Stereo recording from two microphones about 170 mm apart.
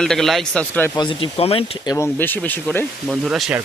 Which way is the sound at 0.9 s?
30° left (ahead or behind).